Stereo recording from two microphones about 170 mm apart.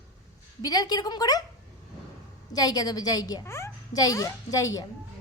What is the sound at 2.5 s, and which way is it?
A woman's voice, 20° left (ahead or behind).